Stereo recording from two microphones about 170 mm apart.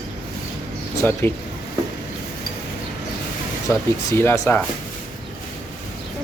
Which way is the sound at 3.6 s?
15° left (ahead or behind).